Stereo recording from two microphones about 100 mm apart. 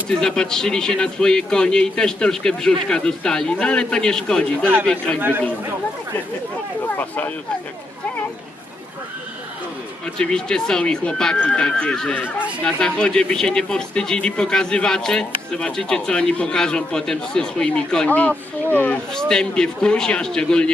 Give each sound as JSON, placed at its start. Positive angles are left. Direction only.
{"t": 0.2, "sound": "speech", "side_deg": 5}
{"t": 6.8, "sound": "speech", "side_deg": 20}
{"t": 10.2, "sound": "speech", "side_deg": 10}